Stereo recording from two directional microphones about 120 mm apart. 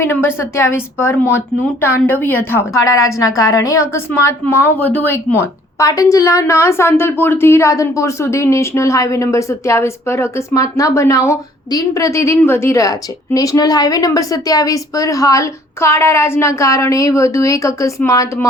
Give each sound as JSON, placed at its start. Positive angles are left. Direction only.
{"t": 0.0, "sound": "a woman's voice", "side_deg": 20}